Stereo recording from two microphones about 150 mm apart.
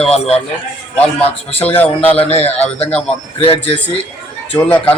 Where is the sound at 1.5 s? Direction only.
45° left (ahead or behind).